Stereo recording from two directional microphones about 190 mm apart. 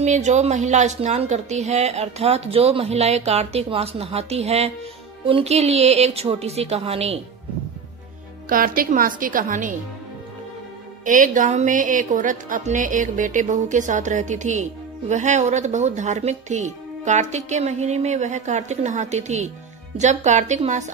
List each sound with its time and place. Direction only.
0.0 s a woman's voice: 35° right (ahead or behind)
8.5 s a woman's voice: 50° right (ahead or behind)
11.1 s a woman's voice: 45° right (ahead or behind)